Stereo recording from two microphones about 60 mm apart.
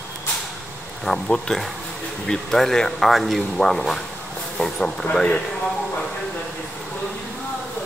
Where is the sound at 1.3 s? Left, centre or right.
Centre.